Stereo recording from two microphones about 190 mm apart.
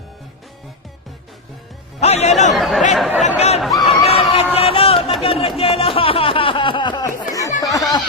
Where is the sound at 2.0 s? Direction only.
35° left (ahead or behind).